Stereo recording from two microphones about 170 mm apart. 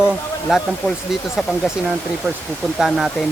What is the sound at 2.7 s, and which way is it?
Speech, centre (ahead or behind).